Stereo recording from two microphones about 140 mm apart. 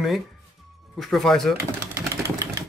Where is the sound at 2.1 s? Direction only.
20° right (ahead or behind).